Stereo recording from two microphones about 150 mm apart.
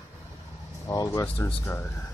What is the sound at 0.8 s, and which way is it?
Speech, 20° left (ahead or behind).